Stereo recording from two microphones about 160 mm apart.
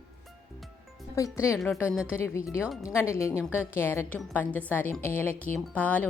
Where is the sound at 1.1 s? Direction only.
20° left (ahead or behind).